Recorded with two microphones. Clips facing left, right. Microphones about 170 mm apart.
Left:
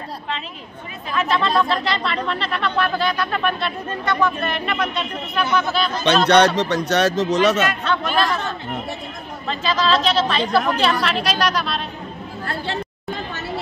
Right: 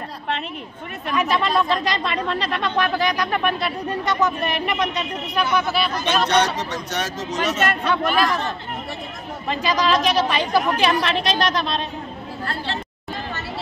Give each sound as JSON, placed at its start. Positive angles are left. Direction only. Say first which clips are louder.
{"t": 1.1, "sound": "speech", "louder": "left 1 dB", "side_deg": -10}
{"t": 6.2, "sound": "speech", "louder": "left 8 dB", "side_deg": 70}
{"t": 7.8, "sound": "speech", "louder": "right 1 dB", "side_deg": -10}
{"t": 9.5, "sound": "speech", "louder": "even", "side_deg": -15}